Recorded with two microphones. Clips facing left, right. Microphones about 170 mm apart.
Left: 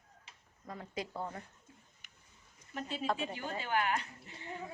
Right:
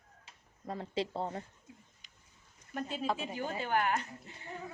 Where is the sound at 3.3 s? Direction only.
45° right (ahead or behind).